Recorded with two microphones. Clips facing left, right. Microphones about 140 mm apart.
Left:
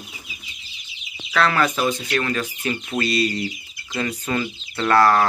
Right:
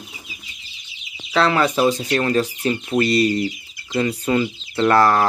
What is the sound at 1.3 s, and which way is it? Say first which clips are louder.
Speech: right 3 dB; 25° right (ahead or behind).